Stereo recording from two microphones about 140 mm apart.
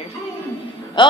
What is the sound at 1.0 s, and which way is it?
Speech, 35° left (ahead or behind).